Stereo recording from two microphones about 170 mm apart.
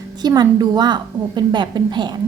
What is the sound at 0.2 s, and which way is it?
A woman's voice, 25° right (ahead or behind).